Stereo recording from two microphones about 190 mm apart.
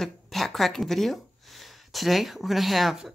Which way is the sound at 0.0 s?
Centre (ahead or behind).